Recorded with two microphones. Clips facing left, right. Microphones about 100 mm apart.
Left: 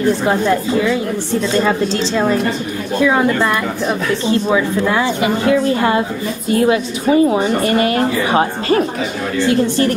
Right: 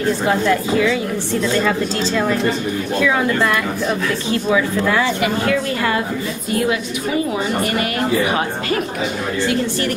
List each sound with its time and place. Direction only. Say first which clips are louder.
0.3 s a woman's voice: left 2 dB; 20° left (ahead or behind)